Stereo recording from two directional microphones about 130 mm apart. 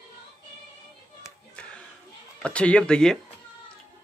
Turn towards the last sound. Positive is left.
turn(degrees=5)  # may be behind; listen again after turning